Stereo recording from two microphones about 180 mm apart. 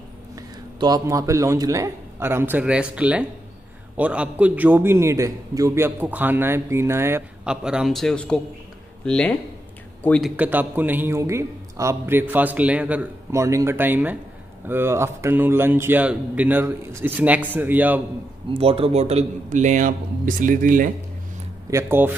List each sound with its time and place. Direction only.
0.4 s a man's voice: 20° right (ahead or behind); by 10.3 s 5° left (ahead or behind)
10.3 s a man's voice: 10° right (ahead or behind)
18.5 s a man's voice: 30° right (ahead or behind); by 20.9 s 50° right (ahead or behind)
21.6 s a man's voice: 15° right (ahead or behind)